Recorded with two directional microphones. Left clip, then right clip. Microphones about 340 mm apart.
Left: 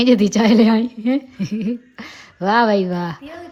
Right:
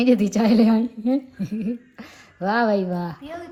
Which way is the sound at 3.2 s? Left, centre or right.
Centre.